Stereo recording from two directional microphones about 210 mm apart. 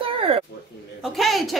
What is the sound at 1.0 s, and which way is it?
Speech, centre (ahead or behind).